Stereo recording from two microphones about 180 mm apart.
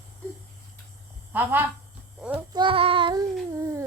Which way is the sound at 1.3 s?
10° right (ahead or behind).